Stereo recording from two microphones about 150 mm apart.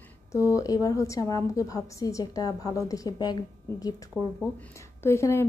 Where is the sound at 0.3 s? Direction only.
20° left (ahead or behind).